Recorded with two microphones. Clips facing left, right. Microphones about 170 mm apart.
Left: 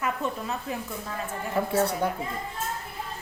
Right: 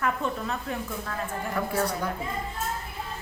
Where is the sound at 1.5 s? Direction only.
25° left (ahead or behind).